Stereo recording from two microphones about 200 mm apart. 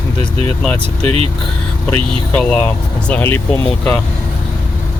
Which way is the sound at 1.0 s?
30° right (ahead or behind).